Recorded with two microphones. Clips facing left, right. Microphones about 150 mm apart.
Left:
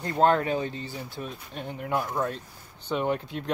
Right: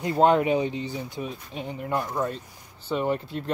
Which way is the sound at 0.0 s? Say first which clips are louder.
Right 3 dB; 10° right (ahead or behind).